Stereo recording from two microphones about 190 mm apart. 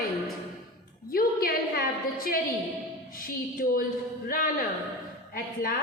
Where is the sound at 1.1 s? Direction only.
50° left (ahead or behind).